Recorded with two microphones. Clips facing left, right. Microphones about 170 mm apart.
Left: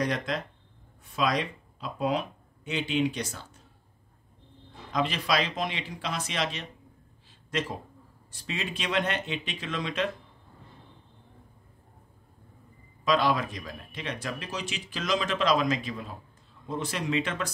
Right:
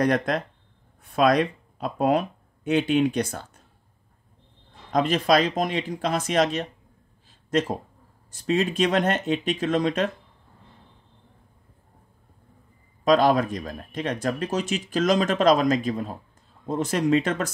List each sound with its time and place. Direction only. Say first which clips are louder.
0.0 s speech: right 7 dB; 55° right (ahead or behind)
4.9 s speech: right 7 dB; 45° right (ahead or behind)
13.0 s speech: right 7 dB; 45° right (ahead or behind)